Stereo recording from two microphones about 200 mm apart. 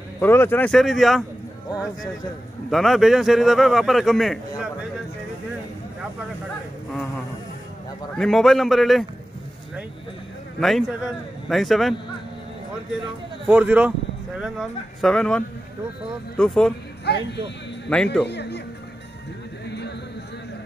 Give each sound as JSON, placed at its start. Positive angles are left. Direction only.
{"t": 0.2, "sound": "speech", "side_deg": 10}
{"t": 2.7, "sound": "speech", "side_deg": 0}
{"t": 8.2, "sound": "speech", "side_deg": 0}
{"t": 10.6, "sound": "speech", "side_deg": 0}
{"t": 13.5, "sound": "speech", "side_deg": -5}
{"t": 17.0, "sound": "speech", "side_deg": 55}
{"t": 17.8, "sound": "speech", "side_deg": 5}
{"t": 18.2, "sound": "speech", "side_deg": 55}